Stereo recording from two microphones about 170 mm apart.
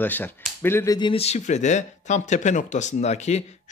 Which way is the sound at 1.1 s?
40° left (ahead or behind).